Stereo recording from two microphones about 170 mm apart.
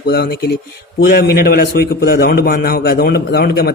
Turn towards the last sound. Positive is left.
turn(degrees=65)  # may be behind; listen again after turning